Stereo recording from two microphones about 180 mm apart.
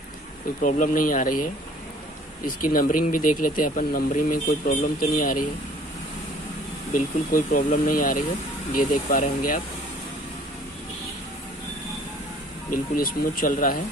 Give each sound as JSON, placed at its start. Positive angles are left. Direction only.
{"t": 0.6, "sound": "speech", "side_deg": 45}
{"t": 6.9, "sound": "speech", "side_deg": 50}
{"t": 12.7, "sound": "speech", "side_deg": 50}